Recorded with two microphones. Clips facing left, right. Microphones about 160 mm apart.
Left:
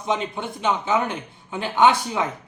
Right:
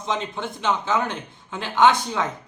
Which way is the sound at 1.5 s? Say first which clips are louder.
Even; 10° left (ahead or behind).